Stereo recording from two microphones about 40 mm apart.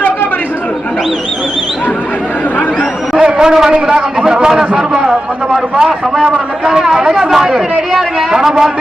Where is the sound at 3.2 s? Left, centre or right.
Centre.